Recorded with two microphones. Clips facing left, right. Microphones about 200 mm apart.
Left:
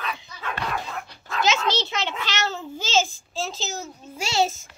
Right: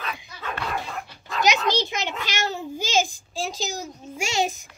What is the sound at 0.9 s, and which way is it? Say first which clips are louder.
Dog: even; 5° right (ahead or behind).